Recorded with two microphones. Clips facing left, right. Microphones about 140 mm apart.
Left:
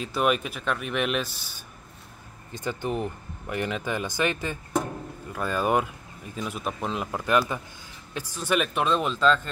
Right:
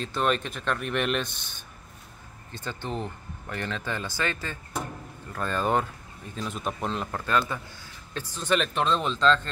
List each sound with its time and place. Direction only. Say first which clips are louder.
0.0 s speech: left 2 dB; 10° left (ahead or behind)